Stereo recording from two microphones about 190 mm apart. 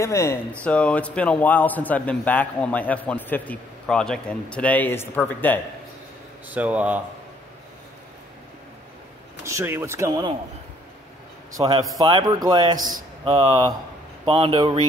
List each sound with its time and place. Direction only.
0.0 s a man's voice: 15° left (ahead or behind)
6.5 s speech: 5° right (ahead or behind)
9.4 s speech: 15° right (ahead or behind)
11.6 s speech: 25° right (ahead or behind)